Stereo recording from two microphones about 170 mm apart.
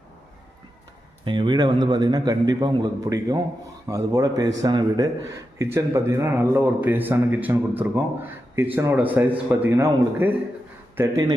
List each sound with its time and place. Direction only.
1.2 s a man's voice: 25° right (ahead or behind)